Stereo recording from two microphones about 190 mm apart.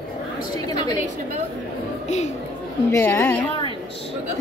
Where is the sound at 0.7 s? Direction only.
20° left (ahead or behind).